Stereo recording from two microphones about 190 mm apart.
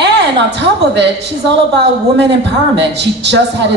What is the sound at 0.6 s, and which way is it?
Speech, 65° right (ahead or behind).